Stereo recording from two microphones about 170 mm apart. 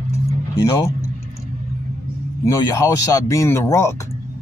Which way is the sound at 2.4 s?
15° left (ahead or behind).